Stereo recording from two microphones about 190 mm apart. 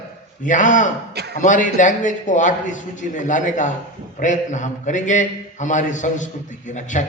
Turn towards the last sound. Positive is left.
turn(degrees=40)  # may be behind; listen again after turning